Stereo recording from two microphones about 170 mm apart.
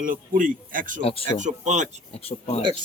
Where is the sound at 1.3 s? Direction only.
45° right (ahead or behind).